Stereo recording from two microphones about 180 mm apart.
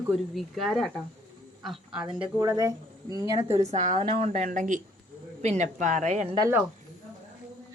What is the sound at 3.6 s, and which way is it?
Speech, 45° right (ahead or behind).